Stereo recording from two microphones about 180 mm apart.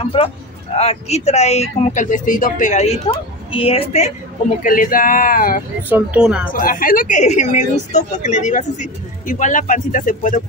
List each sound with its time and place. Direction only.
0.0 s speech: 30° left (ahead or behind)
4.6 s speech: 50° left (ahead or behind)
5.9 s speech: 10° right (ahead or behind)
6.5 s speech: 50° left (ahead or behind)